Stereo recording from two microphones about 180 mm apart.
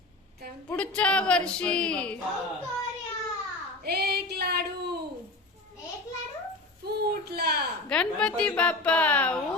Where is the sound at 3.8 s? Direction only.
60° right (ahead or behind).